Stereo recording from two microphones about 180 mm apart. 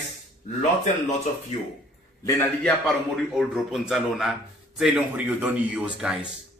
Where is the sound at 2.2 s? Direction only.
15° left (ahead or behind).